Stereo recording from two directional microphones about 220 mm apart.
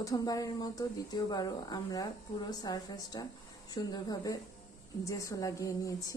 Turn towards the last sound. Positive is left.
turn(degrees=15)  # may be behind; listen again after turning